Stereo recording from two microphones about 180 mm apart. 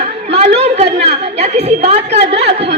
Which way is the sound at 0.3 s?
35° right (ahead or behind).